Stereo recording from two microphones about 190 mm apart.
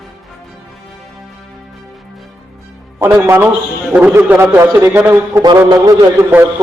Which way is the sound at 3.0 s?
10° right (ahead or behind).